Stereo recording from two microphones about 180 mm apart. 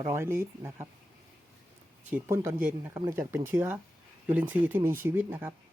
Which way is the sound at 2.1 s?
10° right (ahead or behind).